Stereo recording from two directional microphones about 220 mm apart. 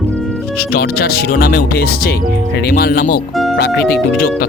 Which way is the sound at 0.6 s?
45° left (ahead or behind).